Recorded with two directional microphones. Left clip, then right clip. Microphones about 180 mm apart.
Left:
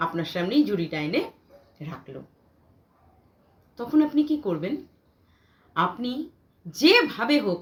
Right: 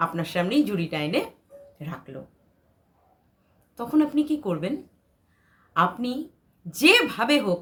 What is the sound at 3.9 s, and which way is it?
Speech, 20° right (ahead or behind).